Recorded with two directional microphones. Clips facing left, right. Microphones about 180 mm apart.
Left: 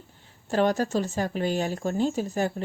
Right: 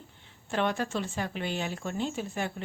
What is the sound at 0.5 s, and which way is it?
A woman's voice, 40° left (ahead or behind).